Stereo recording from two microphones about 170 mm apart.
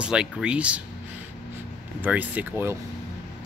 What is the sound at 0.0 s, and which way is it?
Speech, 5° right (ahead or behind).